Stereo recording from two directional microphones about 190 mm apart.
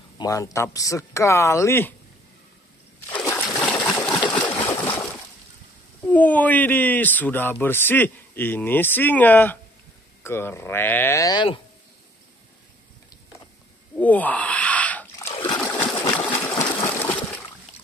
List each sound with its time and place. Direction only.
0.2 s speech: 15° left (ahead or behind)
3.1 s splash: 10° left (ahead or behind)
3.4 s water: centre (ahead or behind)
4.4 s a sound: 10° left (ahead or behind)
6.0 s speech: 10° left (ahead or behind); by 11.6 s 25° left (ahead or behind)
13.9 s a sound: 10° left (ahead or behind)
16.0 s water: 20° left (ahead or behind)